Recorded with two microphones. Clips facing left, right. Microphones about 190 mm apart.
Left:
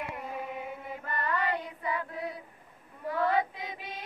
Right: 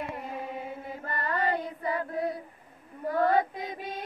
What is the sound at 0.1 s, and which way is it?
Chant, 35° right (ahead or behind).